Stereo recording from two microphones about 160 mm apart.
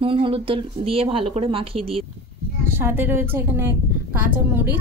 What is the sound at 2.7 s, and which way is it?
A woman's voice, 15° right (ahead or behind).